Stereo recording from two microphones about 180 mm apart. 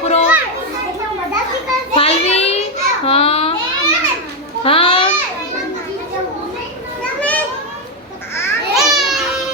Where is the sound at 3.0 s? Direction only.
35° left (ahead or behind).